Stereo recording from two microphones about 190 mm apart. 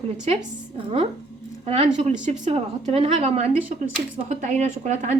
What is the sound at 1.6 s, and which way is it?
Speech, 30° right (ahead or behind).